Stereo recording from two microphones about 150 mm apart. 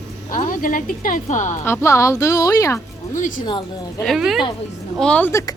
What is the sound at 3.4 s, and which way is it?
Speech, 30° left (ahead or behind).